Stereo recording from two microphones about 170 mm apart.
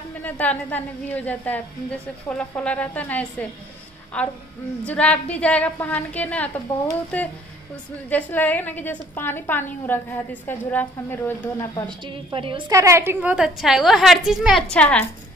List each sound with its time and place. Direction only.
0.2 s a woman's voice: 10° left (ahead or behind)
12.0 s a woman's voice: 30° right (ahead or behind)
12.7 s a woman's voice: 15° right (ahead or behind); by 15.0 s 5° left (ahead or behind)